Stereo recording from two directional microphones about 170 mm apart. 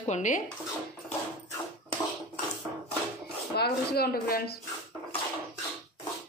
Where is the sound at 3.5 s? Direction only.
70° left (ahead or behind).